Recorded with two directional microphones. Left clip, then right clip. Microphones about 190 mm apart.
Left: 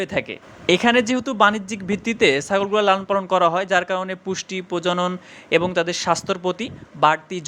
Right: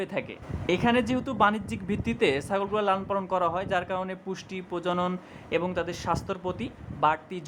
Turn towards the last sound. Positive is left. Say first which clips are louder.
# left 8 dB
turn(degrees=15)  # may be behind; listen again after turning